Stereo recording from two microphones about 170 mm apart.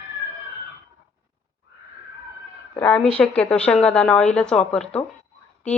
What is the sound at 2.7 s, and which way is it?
A woman's voice, 10° left (ahead or behind).